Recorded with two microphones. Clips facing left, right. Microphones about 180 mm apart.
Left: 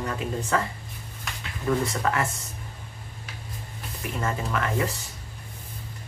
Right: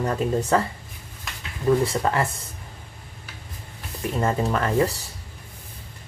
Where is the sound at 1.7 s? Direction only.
30° right (ahead or behind).